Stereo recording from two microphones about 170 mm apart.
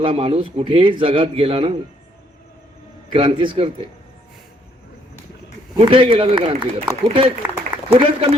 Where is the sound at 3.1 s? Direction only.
30° right (ahead or behind).